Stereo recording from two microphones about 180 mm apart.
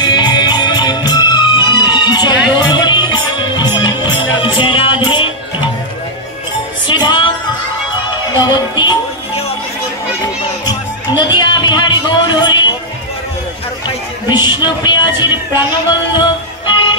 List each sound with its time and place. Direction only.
0.0 s music: 25° left (ahead or behind)
6.9 s music: 25° left (ahead or behind)
8.4 s music: 25° left (ahead or behind)
11.1 s a sound: 25° left (ahead or behind)
14.3 s music: 25° left (ahead or behind)